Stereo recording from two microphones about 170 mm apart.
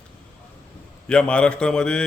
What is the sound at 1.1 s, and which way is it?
Speech, 5° left (ahead or behind).